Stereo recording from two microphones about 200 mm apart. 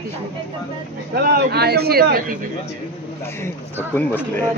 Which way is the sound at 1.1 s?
50° right (ahead or behind).